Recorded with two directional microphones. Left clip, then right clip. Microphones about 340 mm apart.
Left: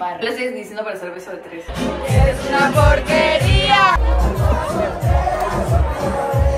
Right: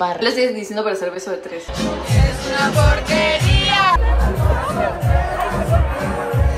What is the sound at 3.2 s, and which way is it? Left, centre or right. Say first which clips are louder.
Music: left 2 dB; centre.